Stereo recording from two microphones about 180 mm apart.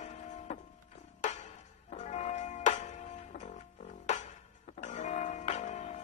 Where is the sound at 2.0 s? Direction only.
40° left (ahead or behind).